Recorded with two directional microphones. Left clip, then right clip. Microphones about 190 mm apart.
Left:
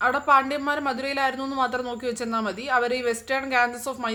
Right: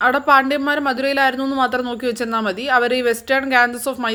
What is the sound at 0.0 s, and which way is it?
A man's voice, 30° right (ahead or behind).